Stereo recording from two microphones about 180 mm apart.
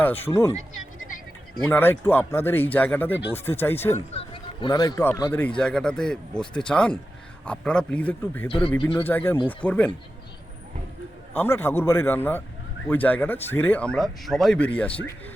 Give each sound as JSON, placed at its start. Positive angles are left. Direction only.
{"t": 0.0, "sound": "speech", "side_deg": 10}
{"t": 1.7, "sound": "speech", "side_deg": 10}
{"t": 3.9, "sound": "speech", "side_deg": 30}
{"t": 11.3, "sound": "speech", "side_deg": 10}